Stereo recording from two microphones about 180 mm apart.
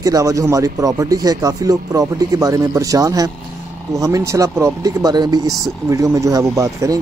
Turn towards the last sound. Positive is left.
turn(degrees=-15)  # may be behind; listen again after turning